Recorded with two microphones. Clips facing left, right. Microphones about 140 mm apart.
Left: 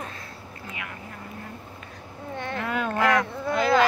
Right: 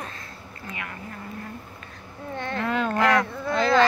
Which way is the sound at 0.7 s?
5° left (ahead or behind).